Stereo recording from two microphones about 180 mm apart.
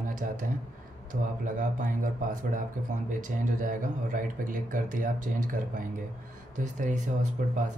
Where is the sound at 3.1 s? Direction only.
45° right (ahead or behind).